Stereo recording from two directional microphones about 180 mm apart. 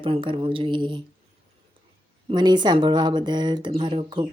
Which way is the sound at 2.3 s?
25° right (ahead or behind).